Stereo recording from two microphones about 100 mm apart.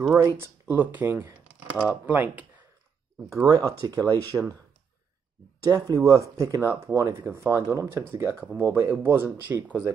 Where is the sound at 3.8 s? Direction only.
35° right (ahead or behind).